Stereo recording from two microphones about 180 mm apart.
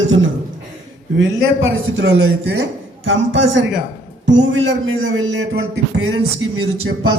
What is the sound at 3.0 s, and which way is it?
Speech, 90° right.